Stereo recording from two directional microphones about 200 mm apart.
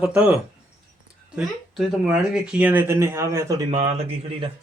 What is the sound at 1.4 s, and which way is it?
Speech, centre (ahead or behind).